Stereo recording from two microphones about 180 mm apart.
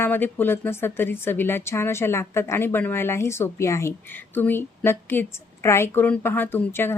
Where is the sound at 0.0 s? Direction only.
10° left (ahead or behind).